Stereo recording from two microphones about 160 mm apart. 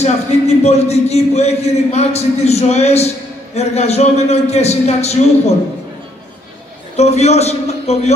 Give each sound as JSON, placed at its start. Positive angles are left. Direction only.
{"t": 0.0, "sound": "a man's voice", "side_deg": 45}
{"t": 7.0, "sound": "a man's voice", "side_deg": 45}